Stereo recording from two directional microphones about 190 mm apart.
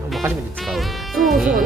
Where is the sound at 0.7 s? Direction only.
Centre (ahead or behind).